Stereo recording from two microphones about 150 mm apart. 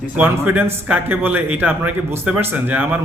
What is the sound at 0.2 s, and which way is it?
A man's voice, 10° right (ahead or behind).